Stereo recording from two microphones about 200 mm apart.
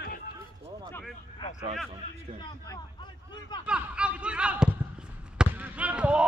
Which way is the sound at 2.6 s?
20° left (ahead or behind).